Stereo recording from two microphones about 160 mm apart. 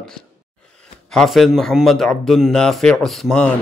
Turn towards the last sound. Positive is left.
turn(degrees=5)  # may be behind; listen again after turning